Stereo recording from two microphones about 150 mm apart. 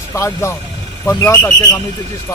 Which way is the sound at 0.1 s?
20° left (ahead or behind).